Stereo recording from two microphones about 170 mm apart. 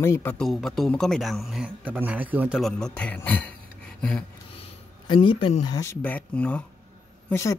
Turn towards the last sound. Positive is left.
turn(degrees=15)  # may be behind; listen again after turning